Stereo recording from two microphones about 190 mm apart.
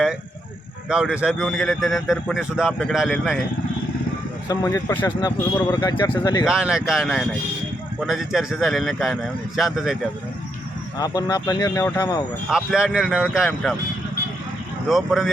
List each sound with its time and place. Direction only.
0.9 s a man's voice: 5° right (ahead or behind)
4.4 s speech: 20° left (ahead or behind)
6.4 s a man's voice: 5° right (ahead or behind)
10.9 s speech: 20° left (ahead or behind)
12.5 s a man's voice: 5° right (ahead or behind)
14.8 s a man's voice: centre (ahead or behind)